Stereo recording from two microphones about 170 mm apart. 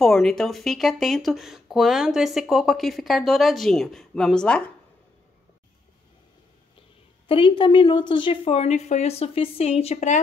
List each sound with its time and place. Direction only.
0.0 s speech: centre (ahead or behind)
7.2 s a woman's voice: 30° left (ahead or behind)